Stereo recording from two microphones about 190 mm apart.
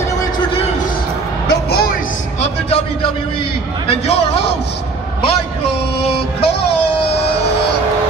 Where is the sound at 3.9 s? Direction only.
30° left (ahead or behind).